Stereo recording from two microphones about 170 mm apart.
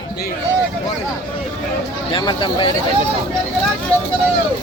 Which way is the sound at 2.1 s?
30° left (ahead or behind).